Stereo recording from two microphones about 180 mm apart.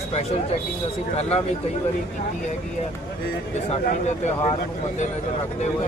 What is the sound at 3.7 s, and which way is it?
Speech, 35° left (ahead or behind).